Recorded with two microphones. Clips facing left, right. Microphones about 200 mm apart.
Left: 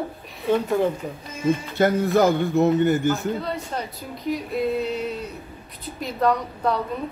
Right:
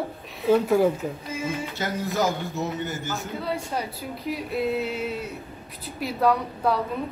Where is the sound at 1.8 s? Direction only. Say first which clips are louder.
Left 8 dB; 55° left (ahead or behind).